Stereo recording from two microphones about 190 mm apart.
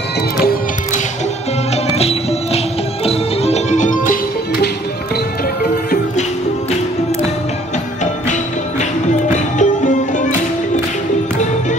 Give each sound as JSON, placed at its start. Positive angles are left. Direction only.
{"t": 1.9, "sound": "music", "side_deg": 30}
{"t": 8.0, "sound": "music", "side_deg": 40}